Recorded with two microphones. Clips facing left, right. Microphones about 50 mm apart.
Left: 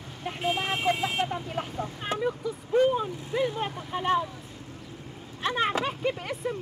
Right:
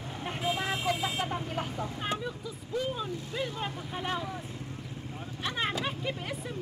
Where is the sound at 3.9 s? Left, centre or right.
Left.